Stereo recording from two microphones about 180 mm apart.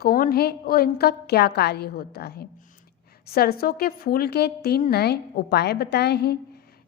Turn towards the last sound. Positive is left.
turn(degrees=65)  # may be behind; listen again after turning